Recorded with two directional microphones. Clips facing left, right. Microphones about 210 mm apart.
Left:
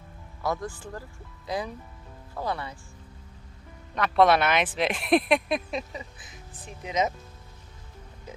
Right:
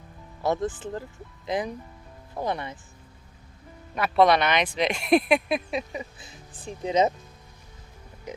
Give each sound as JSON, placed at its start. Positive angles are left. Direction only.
{"t": 0.4, "sound": "speech", "side_deg": -25}
{"t": 3.9, "sound": "speech", "side_deg": -5}
{"t": 5.9, "sound": "speech", "side_deg": -20}
{"t": 6.6, "sound": "speech", "side_deg": -30}
{"t": 8.3, "sound": "speech", "side_deg": -20}